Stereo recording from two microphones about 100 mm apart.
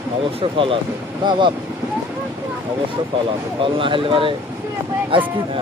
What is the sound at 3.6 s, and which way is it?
Speech, 60° right (ahead or behind).